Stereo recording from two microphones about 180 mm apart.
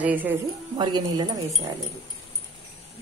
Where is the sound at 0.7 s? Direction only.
25° right (ahead or behind).